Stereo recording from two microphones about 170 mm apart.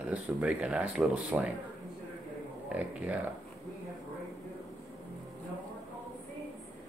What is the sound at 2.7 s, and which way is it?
Speech, 10° right (ahead or behind).